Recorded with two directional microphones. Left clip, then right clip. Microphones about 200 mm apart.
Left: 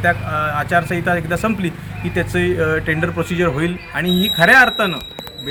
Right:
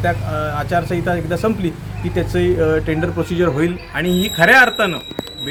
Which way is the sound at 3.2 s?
20° right (ahead or behind).